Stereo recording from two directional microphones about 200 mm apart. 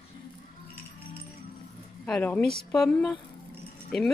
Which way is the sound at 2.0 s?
5° left (ahead or behind).